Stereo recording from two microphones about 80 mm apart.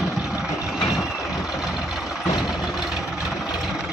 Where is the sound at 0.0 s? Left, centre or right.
Centre.